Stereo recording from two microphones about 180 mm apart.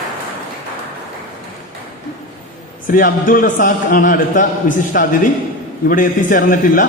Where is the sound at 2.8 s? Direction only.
50° left (ahead or behind).